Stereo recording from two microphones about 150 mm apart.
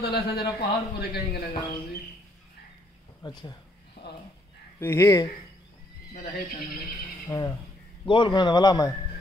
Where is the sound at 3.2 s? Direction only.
25° left (ahead or behind).